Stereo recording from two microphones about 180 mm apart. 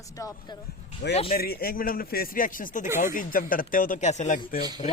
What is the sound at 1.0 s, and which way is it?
Speech, 70° left (ahead or behind).